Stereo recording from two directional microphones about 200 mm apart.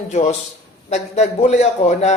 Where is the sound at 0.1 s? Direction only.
35° left (ahead or behind).